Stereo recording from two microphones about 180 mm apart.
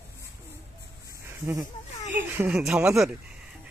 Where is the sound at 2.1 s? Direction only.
10° right (ahead or behind).